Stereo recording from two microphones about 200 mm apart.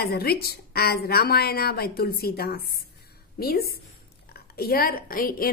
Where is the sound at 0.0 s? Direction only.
50° left (ahead or behind).